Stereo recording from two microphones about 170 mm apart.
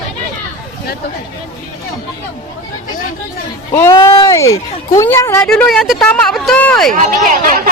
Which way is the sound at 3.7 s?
15° left (ahead or behind).